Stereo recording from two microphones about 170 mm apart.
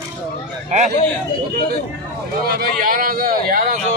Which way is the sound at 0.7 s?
45° right (ahead or behind).